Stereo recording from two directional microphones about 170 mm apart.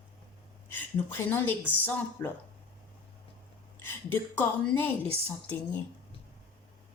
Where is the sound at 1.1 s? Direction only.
10° left (ahead or behind).